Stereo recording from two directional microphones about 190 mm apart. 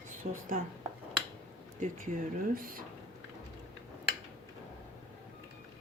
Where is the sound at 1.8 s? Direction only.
45° right (ahead or behind).